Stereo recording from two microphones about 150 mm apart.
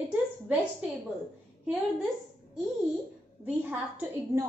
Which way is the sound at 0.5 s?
10° right (ahead or behind).